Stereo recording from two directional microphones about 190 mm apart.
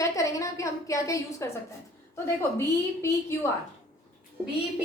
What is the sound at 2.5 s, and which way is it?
Speech, 15° left (ahead or behind).